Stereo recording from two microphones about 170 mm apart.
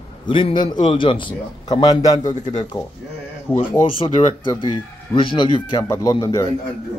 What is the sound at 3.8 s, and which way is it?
Speech, 40° left (ahead or behind).